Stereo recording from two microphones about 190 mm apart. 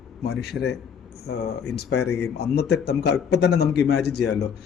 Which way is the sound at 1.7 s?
60° left (ahead or behind).